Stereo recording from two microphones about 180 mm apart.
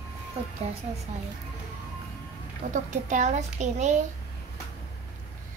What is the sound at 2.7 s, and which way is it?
A woman's voice, 45° right (ahead or behind).